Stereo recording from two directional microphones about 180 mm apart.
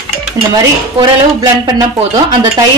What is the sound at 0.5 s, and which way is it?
Stir, 20° right (ahead or behind).